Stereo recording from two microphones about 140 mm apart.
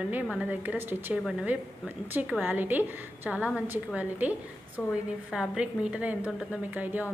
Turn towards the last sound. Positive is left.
turn(degrees=-10)  # may be behind; listen again after turning